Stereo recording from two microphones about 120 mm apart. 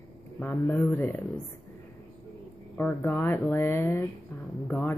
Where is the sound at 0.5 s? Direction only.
20° left (ahead or behind).